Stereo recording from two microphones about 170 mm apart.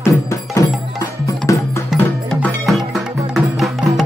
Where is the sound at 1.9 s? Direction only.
Centre (ahead or behind).